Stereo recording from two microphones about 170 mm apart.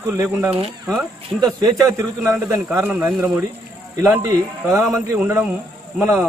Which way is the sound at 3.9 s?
15° right (ahead or behind).